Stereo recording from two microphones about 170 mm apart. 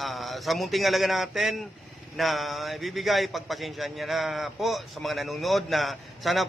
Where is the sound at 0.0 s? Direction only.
Centre (ahead or behind).